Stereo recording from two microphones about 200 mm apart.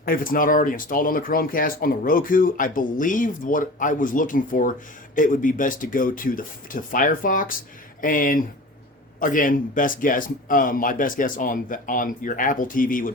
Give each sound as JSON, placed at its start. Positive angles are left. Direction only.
{"t": 0.0, "sound": "speech", "side_deg": 45}